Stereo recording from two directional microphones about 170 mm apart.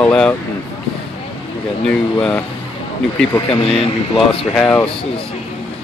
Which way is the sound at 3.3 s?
30° left (ahead or behind).